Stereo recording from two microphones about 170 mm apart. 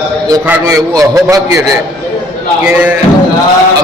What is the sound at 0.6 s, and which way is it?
Speech, 20° right (ahead or behind).